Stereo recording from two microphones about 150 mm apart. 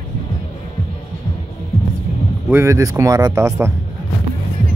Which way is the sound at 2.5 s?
15° right (ahead or behind).